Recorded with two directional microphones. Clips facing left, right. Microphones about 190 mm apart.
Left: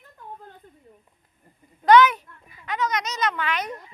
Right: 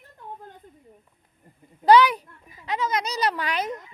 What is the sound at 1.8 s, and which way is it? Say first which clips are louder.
Speech: left 1 dB; 35° right (ahead or behind).